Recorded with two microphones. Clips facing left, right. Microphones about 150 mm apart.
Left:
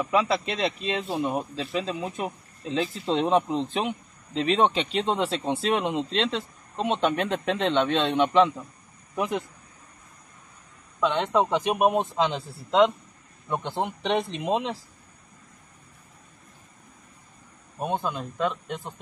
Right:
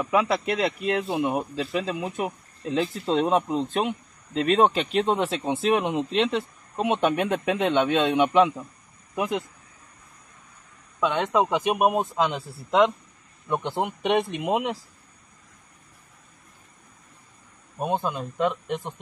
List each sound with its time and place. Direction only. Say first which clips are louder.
0.0 s speech: right 1 dB; 5° right (ahead or behind)
1.0 s speech: right 2 dB; 15° right (ahead or behind)
11.0 s speech: even; 5° right (ahead or behind)
17.8 s speech: right 2 dB; 15° right (ahead or behind)